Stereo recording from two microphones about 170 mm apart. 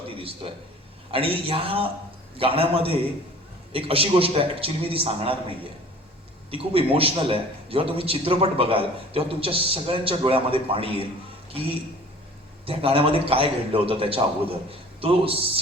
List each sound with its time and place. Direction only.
0.2 s a man's voice: 35° right (ahead or behind)
6.5 s a man's voice: 35° right (ahead or behind)
12.6 s a man's voice: 35° right (ahead or behind)